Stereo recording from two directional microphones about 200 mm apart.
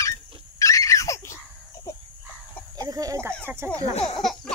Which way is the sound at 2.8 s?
20° right (ahead or behind).